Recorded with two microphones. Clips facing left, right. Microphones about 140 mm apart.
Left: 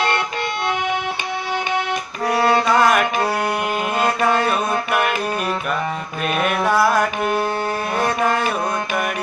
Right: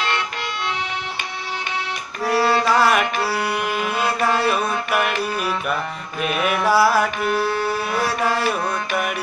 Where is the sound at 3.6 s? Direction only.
45° left (ahead or behind).